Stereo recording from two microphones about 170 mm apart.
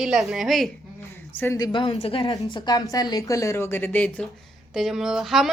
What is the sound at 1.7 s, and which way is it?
A woman's voice, 30° left (ahead or behind).